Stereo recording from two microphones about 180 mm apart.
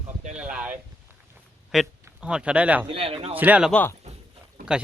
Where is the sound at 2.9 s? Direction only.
30° right (ahead or behind).